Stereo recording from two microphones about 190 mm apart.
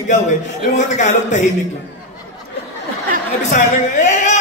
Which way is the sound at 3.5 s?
40° left (ahead or behind).